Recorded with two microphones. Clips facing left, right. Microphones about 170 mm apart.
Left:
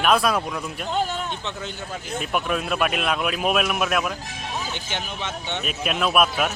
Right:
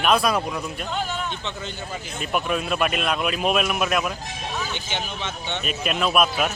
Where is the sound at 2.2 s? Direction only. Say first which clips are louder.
Even; centre (ahead or behind).